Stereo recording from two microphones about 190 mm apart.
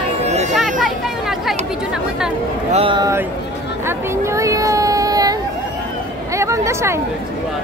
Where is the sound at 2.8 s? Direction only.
25° right (ahead or behind).